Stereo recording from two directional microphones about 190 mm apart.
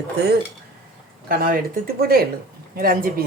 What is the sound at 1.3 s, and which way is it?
A woman's voice, 50° right (ahead or behind).